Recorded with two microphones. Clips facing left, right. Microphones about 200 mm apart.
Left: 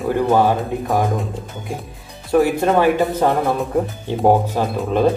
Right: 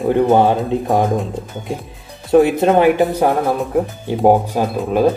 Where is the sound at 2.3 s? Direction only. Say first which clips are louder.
Right 4 dB; 20° right (ahead or behind).